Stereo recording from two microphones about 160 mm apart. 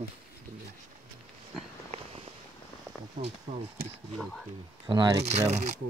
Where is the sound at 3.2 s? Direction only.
55° right (ahead or behind).